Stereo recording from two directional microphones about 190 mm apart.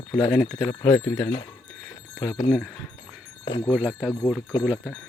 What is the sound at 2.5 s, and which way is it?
Speech, centre (ahead or behind).